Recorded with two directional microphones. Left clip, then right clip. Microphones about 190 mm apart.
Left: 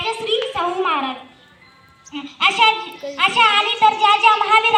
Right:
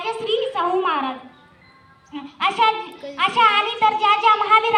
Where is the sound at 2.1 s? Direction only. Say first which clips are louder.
Left 4 dB; 5° left (ahead or behind).